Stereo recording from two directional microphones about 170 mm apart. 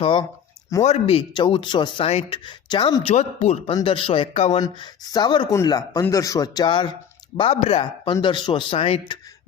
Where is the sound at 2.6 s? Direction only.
25° left (ahead or behind).